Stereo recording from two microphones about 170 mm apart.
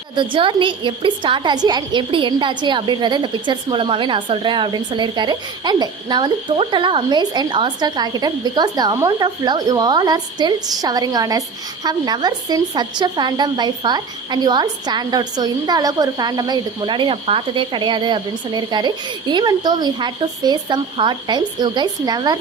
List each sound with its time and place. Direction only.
0.2 s a woman's voice: 30° right (ahead or behind)